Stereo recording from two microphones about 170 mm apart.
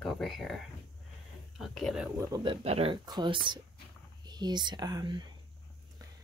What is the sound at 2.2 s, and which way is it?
Speech, 20° right (ahead or behind).